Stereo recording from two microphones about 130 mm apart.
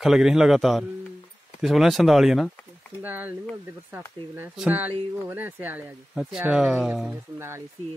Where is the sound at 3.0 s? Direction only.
15° right (ahead or behind).